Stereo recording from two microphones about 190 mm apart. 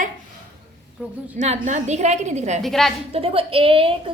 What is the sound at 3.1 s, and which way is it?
A woman's voice, 30° right (ahead or behind).